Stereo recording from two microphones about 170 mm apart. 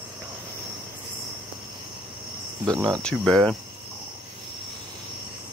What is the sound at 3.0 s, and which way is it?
Speech, 5° left (ahead or behind).